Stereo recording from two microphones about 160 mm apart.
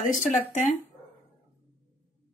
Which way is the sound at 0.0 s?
55° left (ahead or behind).